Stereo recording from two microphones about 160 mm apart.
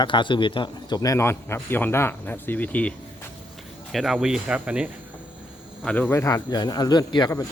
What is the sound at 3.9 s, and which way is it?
Speech, centre (ahead or behind).